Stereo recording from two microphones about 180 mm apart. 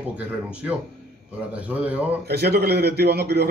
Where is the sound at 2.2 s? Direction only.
65° right (ahead or behind).